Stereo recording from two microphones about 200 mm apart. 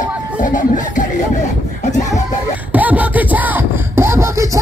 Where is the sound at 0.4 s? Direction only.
40° left (ahead or behind).